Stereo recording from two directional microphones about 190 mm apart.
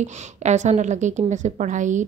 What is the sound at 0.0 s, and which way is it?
A woman's voice, 40° right (ahead or behind).